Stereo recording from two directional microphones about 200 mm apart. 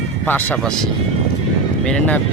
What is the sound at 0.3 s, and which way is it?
Speech, 10° left (ahead or behind).